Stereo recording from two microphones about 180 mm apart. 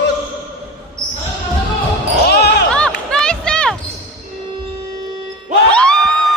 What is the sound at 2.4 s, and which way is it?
Basketball bounce, 70° left (ahead or behind).